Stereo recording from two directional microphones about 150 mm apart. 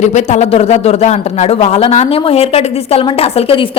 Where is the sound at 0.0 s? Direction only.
50° left (ahead or behind).